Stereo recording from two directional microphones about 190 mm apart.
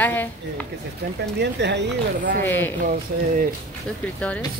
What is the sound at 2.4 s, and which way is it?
Speech, 10° left (ahead or behind).